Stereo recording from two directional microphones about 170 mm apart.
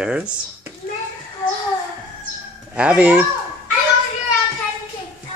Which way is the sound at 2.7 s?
10° right (ahead or behind).